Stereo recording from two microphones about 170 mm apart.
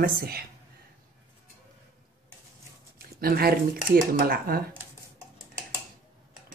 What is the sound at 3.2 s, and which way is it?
Speech, 60° right (ahead or behind).